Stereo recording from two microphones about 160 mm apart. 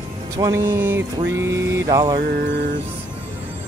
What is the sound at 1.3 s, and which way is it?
Mantra, 20° right (ahead or behind).